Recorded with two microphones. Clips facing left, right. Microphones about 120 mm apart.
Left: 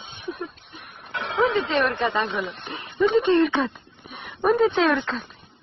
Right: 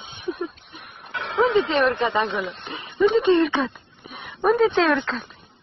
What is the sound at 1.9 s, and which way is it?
Speech, 15° right (ahead or behind).